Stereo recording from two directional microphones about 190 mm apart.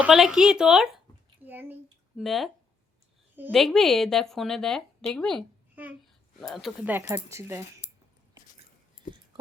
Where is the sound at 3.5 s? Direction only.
Centre (ahead or behind).